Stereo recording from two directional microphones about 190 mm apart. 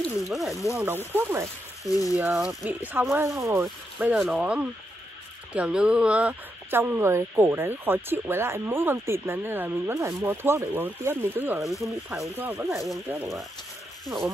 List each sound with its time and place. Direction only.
0.0 s speech: centre (ahead or behind)
0.7 s speech: 10° right (ahead or behind)
1.9 s speech: 15° left (ahead or behind)
2.1 s speech: 5° right (ahead or behind)
12.7 s speech: centre (ahead or behind)